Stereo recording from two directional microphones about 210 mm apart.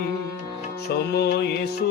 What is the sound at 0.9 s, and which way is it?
Music, 50° left (ahead or behind).